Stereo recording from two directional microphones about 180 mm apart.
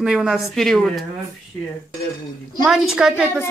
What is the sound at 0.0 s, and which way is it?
Speech, 5° right (ahead or behind).